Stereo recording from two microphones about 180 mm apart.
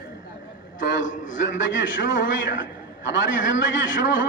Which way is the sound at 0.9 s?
90° left.